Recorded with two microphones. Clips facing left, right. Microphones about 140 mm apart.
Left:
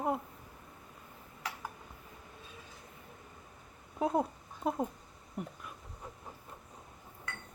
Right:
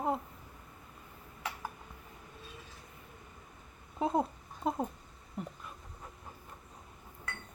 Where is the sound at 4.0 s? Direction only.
5° right (ahead or behind).